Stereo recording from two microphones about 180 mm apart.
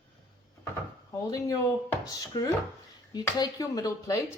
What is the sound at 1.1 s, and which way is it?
Speech, 20° left (ahead or behind).